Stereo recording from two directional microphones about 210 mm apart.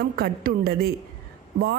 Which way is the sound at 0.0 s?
45° right (ahead or behind).